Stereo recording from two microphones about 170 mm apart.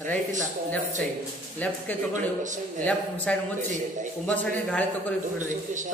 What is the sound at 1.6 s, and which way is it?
A man's voice, 10° left (ahead or behind).